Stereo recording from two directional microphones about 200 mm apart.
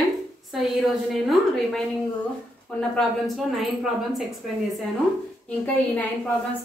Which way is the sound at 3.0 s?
Centre (ahead or behind).